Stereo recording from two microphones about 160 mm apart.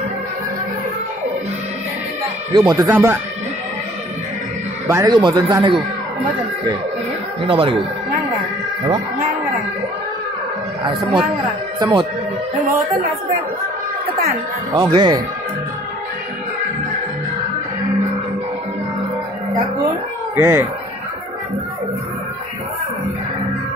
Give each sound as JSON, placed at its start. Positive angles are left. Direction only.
{"t": 2.5, "sound": "speech", "side_deg": -25}
{"t": 4.8, "sound": "speech", "side_deg": -20}
{"t": 7.4, "sound": "speech", "side_deg": -35}
{"t": 10.8, "sound": "speech", "side_deg": -30}
{"t": 12.6, "sound": "speech", "side_deg": -60}
{"t": 14.7, "sound": "speech", "side_deg": -30}
{"t": 19.9, "sound": "speech", "side_deg": -15}